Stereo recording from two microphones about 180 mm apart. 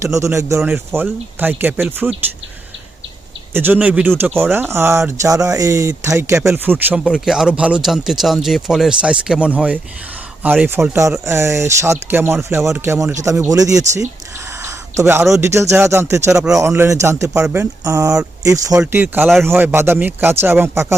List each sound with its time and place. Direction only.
0.0 s speech: 15° right (ahead or behind)
3.5 s speech: 10° right (ahead or behind)